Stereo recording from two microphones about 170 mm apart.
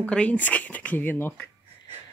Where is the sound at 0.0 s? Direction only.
5° left (ahead or behind).